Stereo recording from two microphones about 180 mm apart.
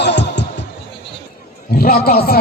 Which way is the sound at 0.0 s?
75° left (ahead or behind).